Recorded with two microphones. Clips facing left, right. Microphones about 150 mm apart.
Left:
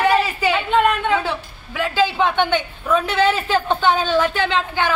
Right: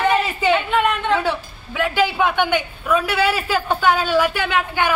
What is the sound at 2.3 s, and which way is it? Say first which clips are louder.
A man's voice: even; 10° right (ahead or behind).